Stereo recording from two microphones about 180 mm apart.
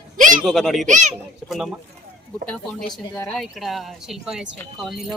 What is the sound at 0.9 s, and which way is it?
Speech, 40° right (ahead or behind).